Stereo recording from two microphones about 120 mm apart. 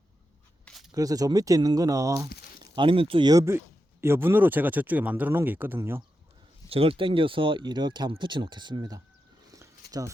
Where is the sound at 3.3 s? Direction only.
20° right (ahead or behind).